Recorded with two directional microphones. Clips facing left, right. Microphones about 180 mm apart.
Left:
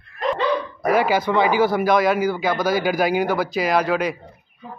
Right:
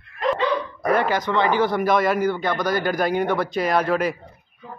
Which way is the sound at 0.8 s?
5° left (ahead or behind).